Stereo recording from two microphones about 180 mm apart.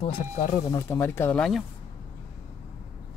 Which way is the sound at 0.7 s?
15° left (ahead or behind).